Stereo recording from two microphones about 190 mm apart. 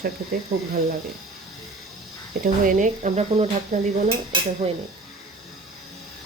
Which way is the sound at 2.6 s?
40° right (ahead or behind).